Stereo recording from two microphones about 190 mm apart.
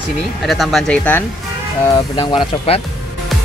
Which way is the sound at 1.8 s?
20° left (ahead or behind).